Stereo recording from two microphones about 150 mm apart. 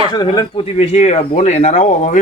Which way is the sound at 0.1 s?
30° left (ahead or behind).